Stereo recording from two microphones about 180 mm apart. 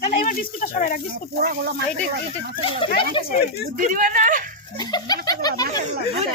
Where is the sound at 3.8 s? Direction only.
50° right (ahead or behind).